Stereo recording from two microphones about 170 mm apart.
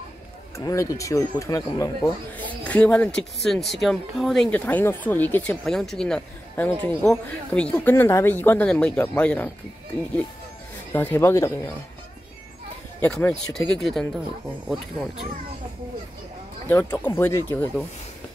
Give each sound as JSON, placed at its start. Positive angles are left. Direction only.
{"t": 0.6, "sound": "speech", "side_deg": 20}
{"t": 10.9, "sound": "speech", "side_deg": 10}
{"t": 13.0, "sound": "speech", "side_deg": 5}
{"t": 16.6, "sound": "speech", "side_deg": 10}